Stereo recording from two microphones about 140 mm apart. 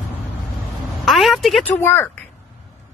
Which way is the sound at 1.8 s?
15° left (ahead or behind).